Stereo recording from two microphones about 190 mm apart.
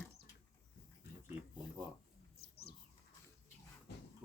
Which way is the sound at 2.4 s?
55° left (ahead or behind).